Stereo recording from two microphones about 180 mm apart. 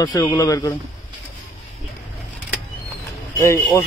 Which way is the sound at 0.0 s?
20° left (ahead or behind).